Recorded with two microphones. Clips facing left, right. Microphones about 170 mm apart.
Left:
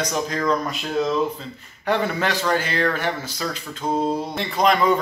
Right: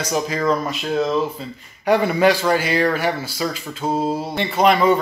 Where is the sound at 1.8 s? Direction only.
10° right (ahead or behind).